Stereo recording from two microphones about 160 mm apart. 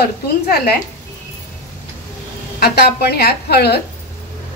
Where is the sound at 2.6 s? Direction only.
75° left (ahead or behind).